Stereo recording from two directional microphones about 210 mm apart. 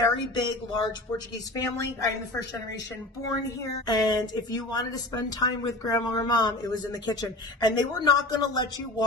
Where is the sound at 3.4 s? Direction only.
15° left (ahead or behind).